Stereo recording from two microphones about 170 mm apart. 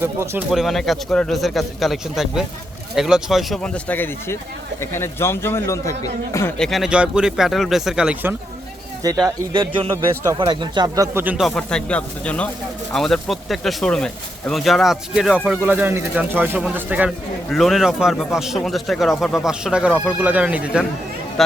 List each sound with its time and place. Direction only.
0.0 s speech: 10° right (ahead or behind)
0.5 s speech: centre (ahead or behind); by 6.5 s 20° left (ahead or behind)
6.6 s speech: centre (ahead or behind)
9.0 s a man's voice: 20° right (ahead or behind)
11.4 s speech: 5° left (ahead or behind)